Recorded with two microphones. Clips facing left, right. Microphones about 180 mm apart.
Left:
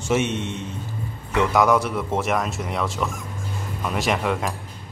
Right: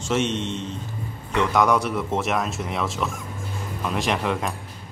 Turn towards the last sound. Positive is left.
turn(degrees=0)  # may be behind; listen again after turning